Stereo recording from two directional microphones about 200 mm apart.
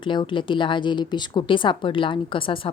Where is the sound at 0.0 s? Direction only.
25° left (ahead or behind).